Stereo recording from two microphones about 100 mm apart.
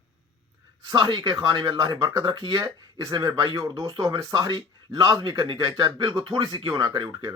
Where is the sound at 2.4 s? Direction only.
55° right (ahead or behind).